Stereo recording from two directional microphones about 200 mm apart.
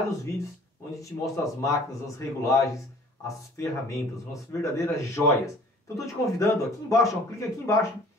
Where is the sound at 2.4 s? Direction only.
15° left (ahead or behind).